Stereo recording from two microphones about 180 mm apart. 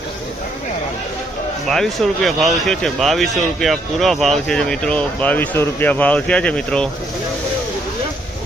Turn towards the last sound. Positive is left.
turn(degrees=5)  # may be behind; listen again after turning